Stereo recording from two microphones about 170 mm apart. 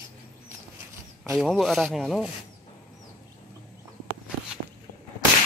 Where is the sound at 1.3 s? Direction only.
Centre (ahead or behind).